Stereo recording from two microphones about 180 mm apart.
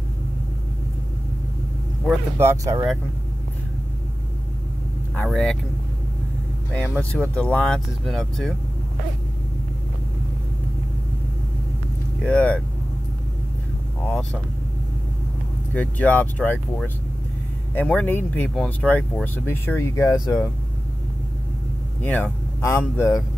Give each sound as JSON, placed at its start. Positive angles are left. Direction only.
{"t": 2.3, "sound": "speech", "side_deg": -15}
{"t": 5.1, "sound": "speech", "side_deg": 5}
{"t": 6.7, "sound": "speech", "side_deg": 10}
{"t": 12.2, "sound": "speech", "side_deg": 5}
{"t": 14.0, "sound": "speech", "side_deg": 10}
{"t": 15.7, "sound": "speech", "side_deg": 10}
{"t": 22.0, "sound": "speech", "side_deg": 10}